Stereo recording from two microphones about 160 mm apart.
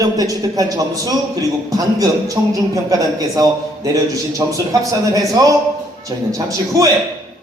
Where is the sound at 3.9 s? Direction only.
20° right (ahead or behind).